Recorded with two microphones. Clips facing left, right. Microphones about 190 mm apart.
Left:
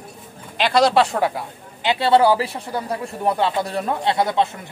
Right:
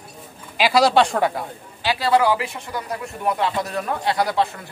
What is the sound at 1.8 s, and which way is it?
Speech, 30° left (ahead or behind).